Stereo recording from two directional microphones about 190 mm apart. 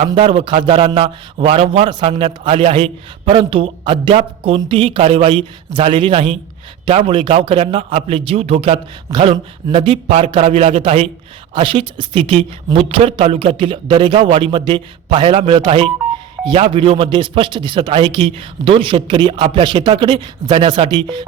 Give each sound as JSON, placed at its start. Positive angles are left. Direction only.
{"t": 0.1, "sound": "a man's voice", "side_deg": -25}